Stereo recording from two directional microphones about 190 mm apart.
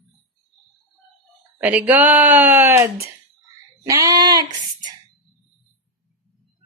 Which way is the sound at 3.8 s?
15° right (ahead or behind).